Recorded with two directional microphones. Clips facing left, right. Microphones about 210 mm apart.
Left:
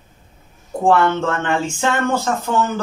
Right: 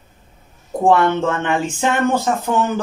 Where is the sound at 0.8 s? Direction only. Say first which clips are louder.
Right 1 dB; 15° right (ahead or behind).